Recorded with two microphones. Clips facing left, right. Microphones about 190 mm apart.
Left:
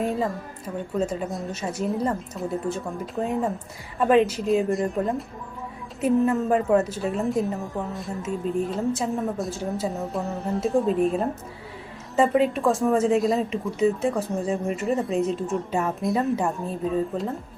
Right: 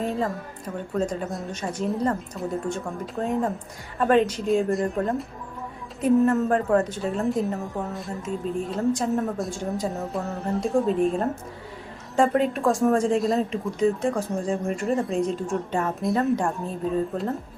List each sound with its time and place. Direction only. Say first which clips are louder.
0.0 s a woman's voice: left 1 dB; centre (ahead or behind)